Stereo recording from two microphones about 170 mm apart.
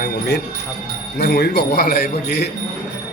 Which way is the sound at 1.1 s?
70° left (ahead or behind).